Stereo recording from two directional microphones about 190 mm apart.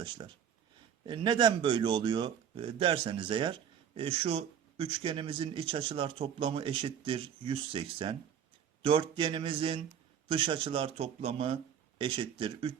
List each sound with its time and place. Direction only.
1.0 s speech: 25° right (ahead or behind)